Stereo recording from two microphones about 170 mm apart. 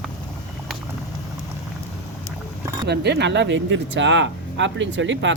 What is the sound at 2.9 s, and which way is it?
Speech, 80° right.